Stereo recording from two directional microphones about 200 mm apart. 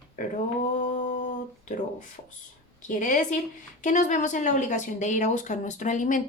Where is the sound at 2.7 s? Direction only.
40° left (ahead or behind).